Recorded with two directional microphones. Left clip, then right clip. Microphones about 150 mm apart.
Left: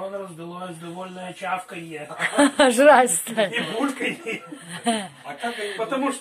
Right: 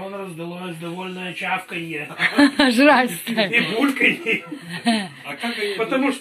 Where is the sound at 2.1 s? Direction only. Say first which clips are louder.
Right 1 dB; 10° left (ahead or behind).